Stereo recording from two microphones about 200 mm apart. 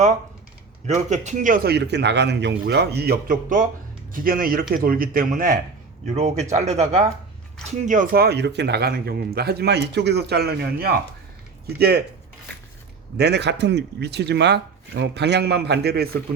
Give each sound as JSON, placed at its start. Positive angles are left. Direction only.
{"t": 0.9, "sound": "speech", "side_deg": -35}
{"t": 13.1, "sound": "speech", "side_deg": -55}